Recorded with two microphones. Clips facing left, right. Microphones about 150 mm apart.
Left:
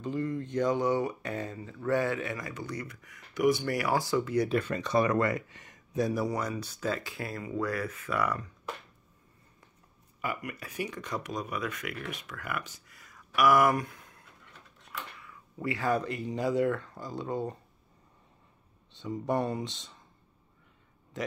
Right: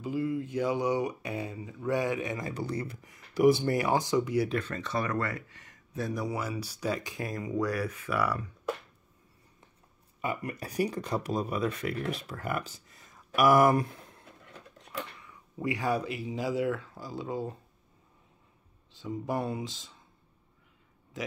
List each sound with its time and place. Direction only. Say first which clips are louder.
0.0 s speech: right 1 dB; 5° right (ahead or behind)
4.5 s speech: left 3 dB; 10° left (ahead or behind)
6.2 s speech: left 1 dB; 5° right (ahead or behind)
10.2 s speech: right 2 dB; 30° right (ahead or behind)
15.2 s speech: even; 15° right (ahead or behind)
18.9 s speech: left 2 dB; centre (ahead or behind)